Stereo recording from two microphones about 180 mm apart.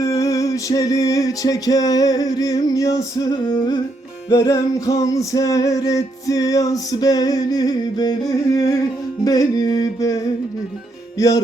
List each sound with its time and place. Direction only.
0.0 s music: 20° left (ahead or behind)